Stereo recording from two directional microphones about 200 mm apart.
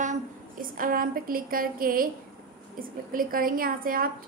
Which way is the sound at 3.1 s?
45° right (ahead or behind).